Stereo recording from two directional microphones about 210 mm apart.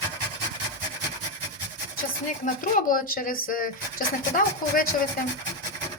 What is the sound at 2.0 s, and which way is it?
Speech, 40° left (ahead or behind).